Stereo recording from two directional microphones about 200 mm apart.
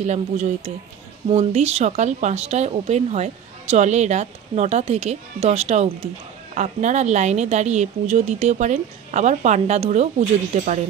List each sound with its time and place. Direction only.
0.0 s a woman's voice: 35° right (ahead or behind)